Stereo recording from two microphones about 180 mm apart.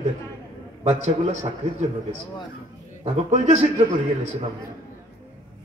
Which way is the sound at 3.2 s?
35° right (ahead or behind).